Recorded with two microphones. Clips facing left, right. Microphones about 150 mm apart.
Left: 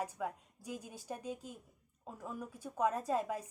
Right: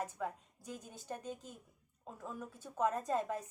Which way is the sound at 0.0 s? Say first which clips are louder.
Left 1 dB; 10° left (ahead or behind).